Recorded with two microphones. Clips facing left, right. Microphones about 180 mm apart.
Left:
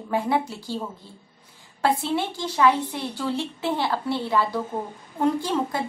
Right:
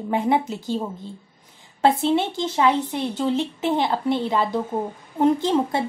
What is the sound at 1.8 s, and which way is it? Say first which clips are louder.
A woman's voice: right 5 dB; 20° right (ahead or behind).